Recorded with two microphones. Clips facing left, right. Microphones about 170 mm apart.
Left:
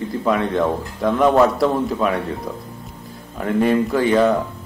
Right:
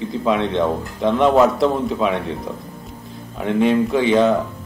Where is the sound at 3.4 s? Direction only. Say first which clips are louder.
Right 1 dB; centre (ahead or behind).